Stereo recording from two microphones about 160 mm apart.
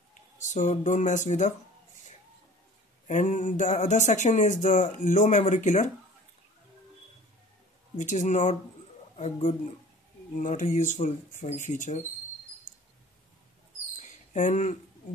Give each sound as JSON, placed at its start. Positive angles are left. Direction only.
{"t": 0.5, "sound": "speech", "side_deg": 50}
{"t": 3.1, "sound": "speech", "side_deg": 50}
{"t": 8.0, "sound": "speech", "side_deg": 50}
{"t": 14.3, "sound": "speech", "side_deg": 50}